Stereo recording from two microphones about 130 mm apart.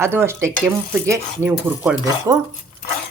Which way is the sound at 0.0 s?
20° right (ahead or behind).